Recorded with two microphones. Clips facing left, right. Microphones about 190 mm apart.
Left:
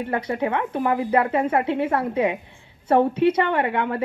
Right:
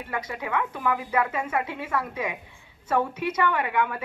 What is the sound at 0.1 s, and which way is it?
Speech, 30° left (ahead or behind).